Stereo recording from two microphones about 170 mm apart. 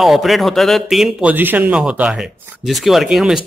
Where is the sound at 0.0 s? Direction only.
Centre (ahead or behind).